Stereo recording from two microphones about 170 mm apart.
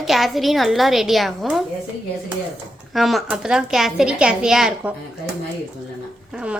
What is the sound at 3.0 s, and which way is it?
Speech, centre (ahead or behind).